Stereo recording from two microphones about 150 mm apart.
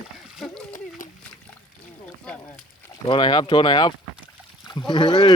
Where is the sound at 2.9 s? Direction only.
30° left (ahead or behind).